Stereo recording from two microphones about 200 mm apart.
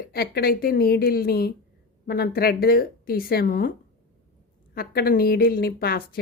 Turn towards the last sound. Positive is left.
turn(degrees=50)  # may be behind; listen again after turning